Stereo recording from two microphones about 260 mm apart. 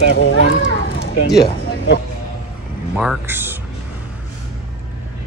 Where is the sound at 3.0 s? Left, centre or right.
Centre.